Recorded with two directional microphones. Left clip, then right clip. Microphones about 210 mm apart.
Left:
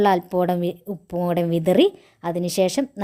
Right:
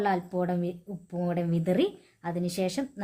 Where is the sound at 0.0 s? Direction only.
40° left (ahead or behind).